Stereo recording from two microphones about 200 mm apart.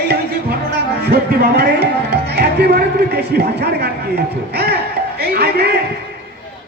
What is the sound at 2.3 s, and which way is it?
Music, 55° right (ahead or behind).